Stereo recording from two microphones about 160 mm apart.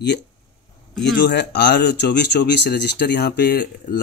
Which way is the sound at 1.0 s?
90° left.